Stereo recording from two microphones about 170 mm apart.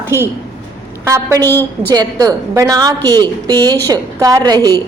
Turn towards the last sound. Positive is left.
turn(degrees=-25)  # may be behind; listen again after turning